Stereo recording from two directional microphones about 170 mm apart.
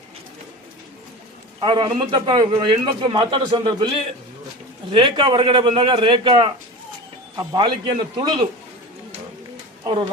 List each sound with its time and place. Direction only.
1.6 s a man's voice: 30° right (ahead or behind)
4.9 s a man's voice: 30° right (ahead or behind)